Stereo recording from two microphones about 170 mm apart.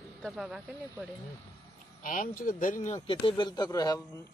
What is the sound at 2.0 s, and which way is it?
Speech, 55° left (ahead or behind).